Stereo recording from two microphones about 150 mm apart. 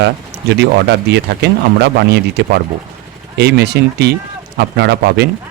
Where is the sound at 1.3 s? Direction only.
90° right.